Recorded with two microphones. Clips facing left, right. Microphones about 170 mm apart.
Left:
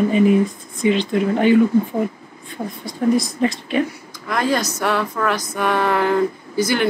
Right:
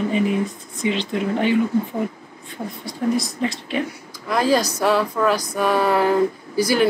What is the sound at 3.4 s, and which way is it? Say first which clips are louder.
Speech: left 4 dB; 50° left (ahead or behind).